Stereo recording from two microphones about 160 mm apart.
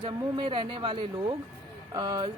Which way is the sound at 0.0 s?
30° right (ahead or behind).